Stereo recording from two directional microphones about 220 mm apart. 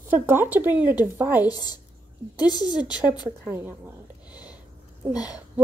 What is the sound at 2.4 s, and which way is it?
Speech, 20° left (ahead or behind).